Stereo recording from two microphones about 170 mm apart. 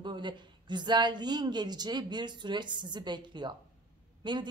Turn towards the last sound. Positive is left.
turn(degrees=-25)  # may be behind; listen again after turning